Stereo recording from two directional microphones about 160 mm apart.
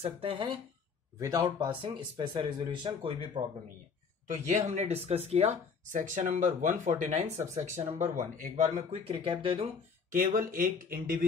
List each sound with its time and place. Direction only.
0.0 s speech: 35° right (ahead or behind)
4.5 s speech: 50° right (ahead or behind)
10.1 s speech: 55° right (ahead or behind)